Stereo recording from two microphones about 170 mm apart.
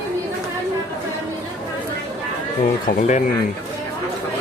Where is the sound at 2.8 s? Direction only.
50° left (ahead or behind).